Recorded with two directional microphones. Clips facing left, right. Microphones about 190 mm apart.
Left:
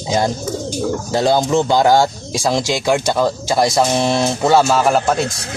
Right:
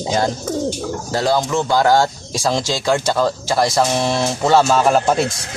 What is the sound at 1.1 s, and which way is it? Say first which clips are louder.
Speech: left 3 dB; 25° left (ahead or behind).